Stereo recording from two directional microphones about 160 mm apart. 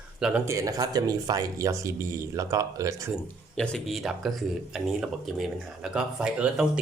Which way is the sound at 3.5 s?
5° left (ahead or behind).